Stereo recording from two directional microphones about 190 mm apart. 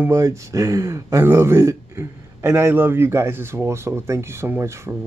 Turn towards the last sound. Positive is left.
turn(degrees=-15)  # may be behind; listen again after turning